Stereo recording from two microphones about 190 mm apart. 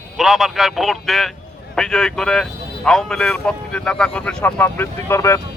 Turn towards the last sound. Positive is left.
turn(degrees=15)  # may be behind; listen again after turning